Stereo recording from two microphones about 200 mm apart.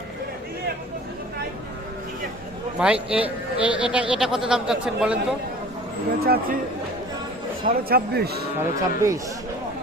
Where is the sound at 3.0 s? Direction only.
5° right (ahead or behind).